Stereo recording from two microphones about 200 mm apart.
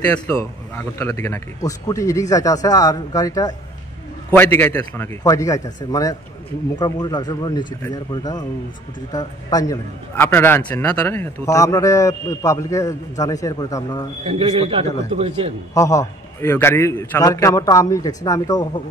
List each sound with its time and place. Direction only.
0.1 s a man's voice: 10° left (ahead or behind)
14.2 s a man's voice: 30° right (ahead or behind)
15.7 s a man's voice: 15° left (ahead or behind)